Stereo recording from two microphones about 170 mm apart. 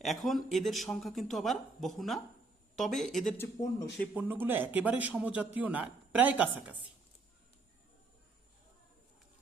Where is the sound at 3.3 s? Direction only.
15° left (ahead or behind).